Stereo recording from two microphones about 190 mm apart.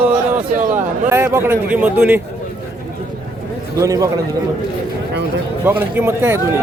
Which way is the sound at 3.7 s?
15° right (ahead or behind).